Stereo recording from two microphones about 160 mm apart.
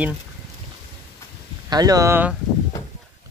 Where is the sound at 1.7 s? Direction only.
25° right (ahead or behind).